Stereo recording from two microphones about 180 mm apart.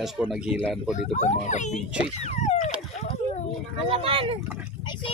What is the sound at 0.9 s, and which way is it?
Speech, 40° left (ahead or behind).